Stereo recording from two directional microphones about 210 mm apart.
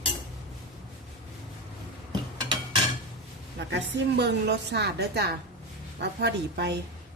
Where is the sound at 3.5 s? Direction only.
55° right (ahead or behind).